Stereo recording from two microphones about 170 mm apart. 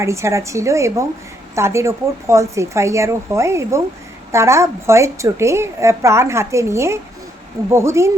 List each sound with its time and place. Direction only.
0.0 s a woman's voice: 15° right (ahead or behind)